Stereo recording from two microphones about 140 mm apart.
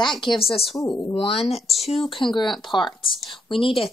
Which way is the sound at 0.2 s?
40° left (ahead or behind).